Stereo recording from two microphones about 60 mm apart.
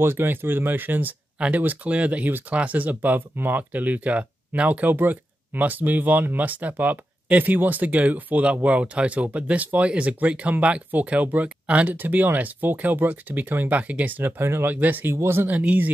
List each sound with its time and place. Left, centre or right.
0.0 s speech: right
14.4 s speech: right
15.1 s speech: right
15.5 s speech: right